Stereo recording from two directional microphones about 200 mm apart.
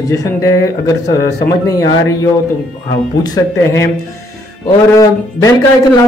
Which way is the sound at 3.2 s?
15° left (ahead or behind).